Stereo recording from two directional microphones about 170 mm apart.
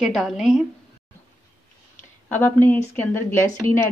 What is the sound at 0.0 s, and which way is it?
Speech, centre (ahead or behind).